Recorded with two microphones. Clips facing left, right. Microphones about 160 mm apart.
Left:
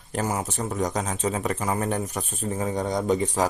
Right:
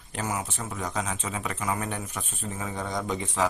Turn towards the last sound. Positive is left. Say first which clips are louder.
# left 5 dB
turn(degrees=35)  # may be behind; listen again after turning